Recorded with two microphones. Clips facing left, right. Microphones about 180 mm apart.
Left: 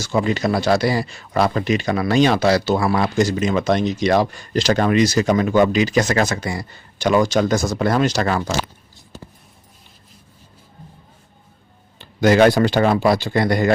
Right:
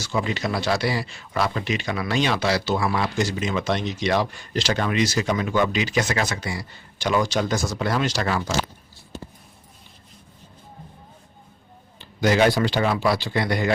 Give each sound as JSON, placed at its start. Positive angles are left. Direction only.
{"t": 0.0, "sound": "speech", "side_deg": 45}
{"t": 11.9, "sound": "speech", "side_deg": 55}